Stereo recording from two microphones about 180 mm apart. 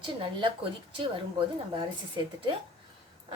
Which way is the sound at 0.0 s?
25° right (ahead or behind).